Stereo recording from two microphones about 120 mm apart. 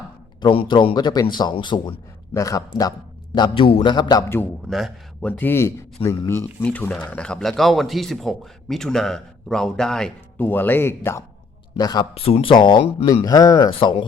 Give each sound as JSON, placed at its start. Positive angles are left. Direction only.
{"t": 0.4, "sound": "a man's voice", "side_deg": 40}
{"t": 2.3, "sound": "a man's voice", "side_deg": 30}
{"t": 3.3, "sound": "a man's voice", "side_deg": 40}
{"t": 4.7, "sound": "a man's voice", "side_deg": 5}
{"t": 10.3, "sound": "speech", "side_deg": 15}
{"t": 11.8, "sound": "a man's voice", "side_deg": 35}
{"t": 12.1, "sound": "a man's voice", "side_deg": 55}
{"t": 13.7, "sound": "speech", "side_deg": 45}